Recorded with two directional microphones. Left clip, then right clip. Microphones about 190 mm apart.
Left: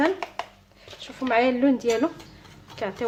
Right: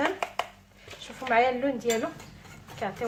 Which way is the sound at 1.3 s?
45° left (ahead or behind).